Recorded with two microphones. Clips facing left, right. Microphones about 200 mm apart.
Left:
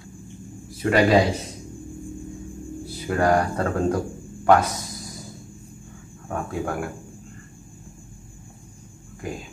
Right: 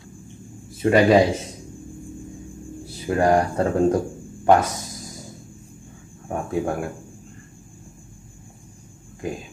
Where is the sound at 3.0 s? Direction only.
20° right (ahead or behind).